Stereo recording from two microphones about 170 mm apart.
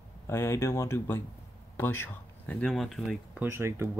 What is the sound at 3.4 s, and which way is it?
Speech, 15° right (ahead or behind).